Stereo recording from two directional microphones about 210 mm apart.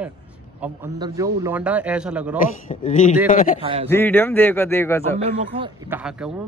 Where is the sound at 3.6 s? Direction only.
25° right (ahead or behind).